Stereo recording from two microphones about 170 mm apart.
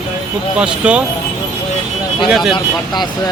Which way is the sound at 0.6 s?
5° right (ahead or behind).